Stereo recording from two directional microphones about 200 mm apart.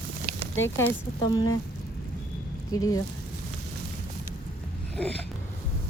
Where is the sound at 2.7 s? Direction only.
20° left (ahead or behind).